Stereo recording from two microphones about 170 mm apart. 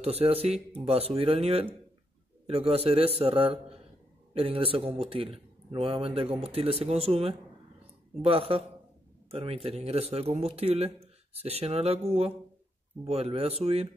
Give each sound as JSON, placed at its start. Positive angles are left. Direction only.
{"t": 0.0, "sound": "a man's voice", "side_deg": -35}